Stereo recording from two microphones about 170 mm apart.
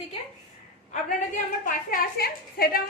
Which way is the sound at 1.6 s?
55° left (ahead or behind).